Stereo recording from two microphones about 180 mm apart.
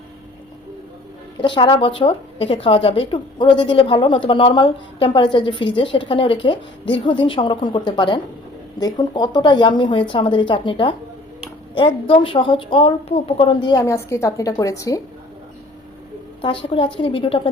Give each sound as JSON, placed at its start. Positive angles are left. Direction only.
{"t": 1.4, "sound": "a woman's voice", "side_deg": 25}
{"t": 16.4, "sound": "a woman's voice", "side_deg": 30}